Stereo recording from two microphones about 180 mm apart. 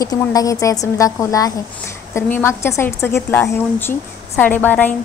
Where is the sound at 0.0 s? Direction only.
20° left (ahead or behind).